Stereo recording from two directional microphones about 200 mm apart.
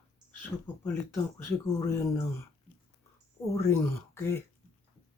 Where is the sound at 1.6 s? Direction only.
15° left (ahead or behind).